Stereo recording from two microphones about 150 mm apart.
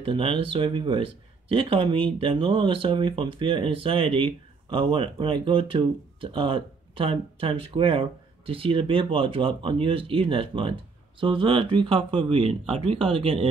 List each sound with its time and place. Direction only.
0.0 s speech: 35° right (ahead or behind)